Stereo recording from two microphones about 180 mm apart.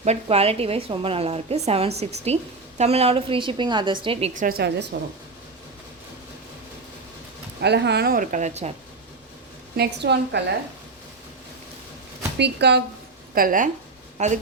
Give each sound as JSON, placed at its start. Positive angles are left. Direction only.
{"t": 0.0, "sound": "a woman's voice", "side_deg": -35}
{"t": 4.4, "sound": "a woman's voice", "side_deg": -55}
{"t": 7.6, "sound": "a woman's voice", "side_deg": -70}
{"t": 9.7, "sound": "a woman's voice", "side_deg": -65}
{"t": 12.4, "sound": "a woman's voice", "side_deg": -70}
{"t": 13.3, "sound": "a woman's voice", "side_deg": -50}
{"t": 14.2, "sound": "a woman's voice", "side_deg": -40}